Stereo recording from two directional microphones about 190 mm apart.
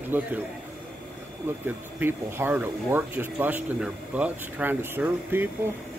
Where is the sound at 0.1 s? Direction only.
10° right (ahead or behind).